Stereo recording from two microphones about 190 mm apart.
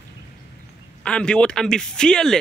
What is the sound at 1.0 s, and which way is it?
Speech, 5° left (ahead or behind).